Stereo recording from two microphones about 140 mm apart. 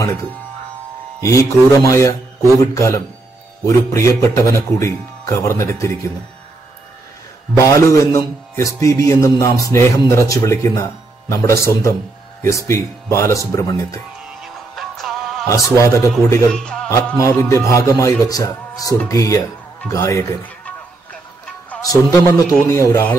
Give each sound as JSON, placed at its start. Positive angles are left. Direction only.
{"t": 0.0, "sound": "a man's voice", "side_deg": 20}
{"t": 7.5, "sound": "a man's voice", "side_deg": 20}
{"t": 14.4, "sound": "music", "side_deg": 0}
{"t": 15.4, "sound": "a man's voice", "side_deg": 20}
{"t": 16.5, "sound": "music", "side_deg": 5}
{"t": 17.1, "sound": "a man's voice", "side_deg": 20}
{"t": 20.4, "sound": "music", "side_deg": 10}
{"t": 22.5, "sound": "a man's voice", "side_deg": 20}